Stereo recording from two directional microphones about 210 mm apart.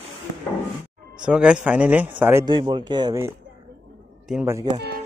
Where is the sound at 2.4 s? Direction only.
25° right (ahead or behind).